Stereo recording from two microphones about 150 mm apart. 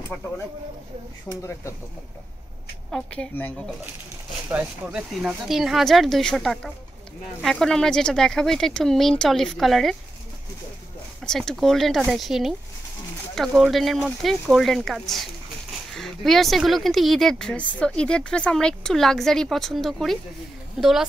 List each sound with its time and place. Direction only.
1.3 s speech: 20° left (ahead or behind)
2.9 s a woman's voice: 10° left (ahead or behind)
4.5 s speech: 10° right (ahead or behind)
11.2 s speech: 5° left (ahead or behind)